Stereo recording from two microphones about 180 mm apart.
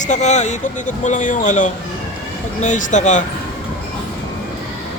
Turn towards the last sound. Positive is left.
turn(degrees=45)  # may be behind; listen again after turning